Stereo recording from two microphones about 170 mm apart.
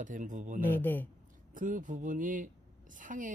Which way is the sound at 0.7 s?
10° left (ahead or behind).